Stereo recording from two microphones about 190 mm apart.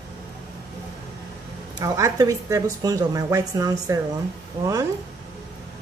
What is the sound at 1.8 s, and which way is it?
A woman's voice, 15° right (ahead or behind).